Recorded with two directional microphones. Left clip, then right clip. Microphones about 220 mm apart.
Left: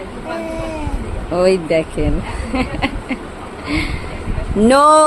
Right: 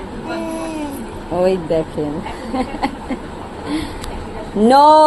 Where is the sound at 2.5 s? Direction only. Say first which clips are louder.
Left 1 dB; 30° left (ahead or behind).